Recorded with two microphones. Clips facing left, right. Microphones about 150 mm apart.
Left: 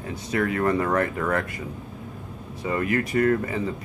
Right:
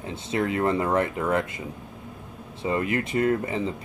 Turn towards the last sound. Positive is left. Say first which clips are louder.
# left 1 dB
turn(degrees=-25)  # may be behind; listen again after turning